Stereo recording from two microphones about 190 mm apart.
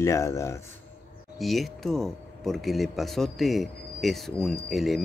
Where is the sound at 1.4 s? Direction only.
Centre (ahead or behind).